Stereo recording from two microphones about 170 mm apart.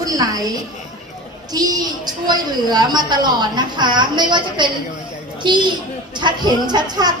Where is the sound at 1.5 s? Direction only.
25° right (ahead or behind).